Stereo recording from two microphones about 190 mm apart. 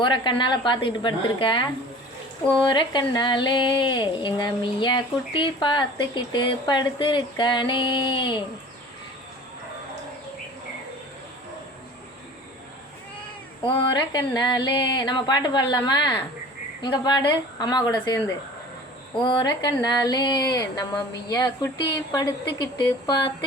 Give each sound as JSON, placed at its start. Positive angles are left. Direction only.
{"t": 0.0, "sound": "speech", "side_deg": 25}
{"t": 2.6, "sound": "speech", "side_deg": 25}
{"t": 13.7, "sound": "speech", "side_deg": 25}
{"t": 19.2, "sound": "speech", "side_deg": 25}